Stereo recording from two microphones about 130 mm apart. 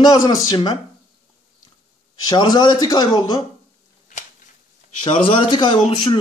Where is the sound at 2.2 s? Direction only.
30° left (ahead or behind).